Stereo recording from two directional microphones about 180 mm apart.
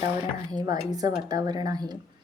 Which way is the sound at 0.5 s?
20° right (ahead or behind).